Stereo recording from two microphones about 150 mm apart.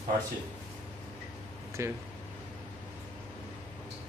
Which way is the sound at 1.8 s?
20° right (ahead or behind).